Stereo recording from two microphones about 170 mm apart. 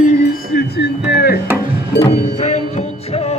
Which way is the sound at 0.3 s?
65° left (ahead or behind).